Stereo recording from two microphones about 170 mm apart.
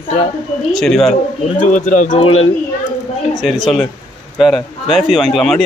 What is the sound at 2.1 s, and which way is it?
Speech, 35° left (ahead or behind).